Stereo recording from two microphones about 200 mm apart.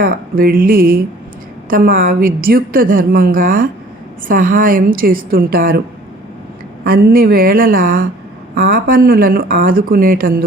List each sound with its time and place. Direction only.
0.0 s a woman's voice: 45° right (ahead or behind)
6.8 s a woman's voice: 45° right (ahead or behind)